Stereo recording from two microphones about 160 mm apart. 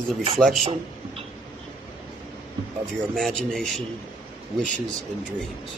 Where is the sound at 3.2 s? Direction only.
Centre (ahead or behind).